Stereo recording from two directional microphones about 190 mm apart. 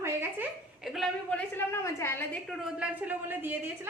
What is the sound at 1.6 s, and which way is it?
Speech, 15° left (ahead or behind).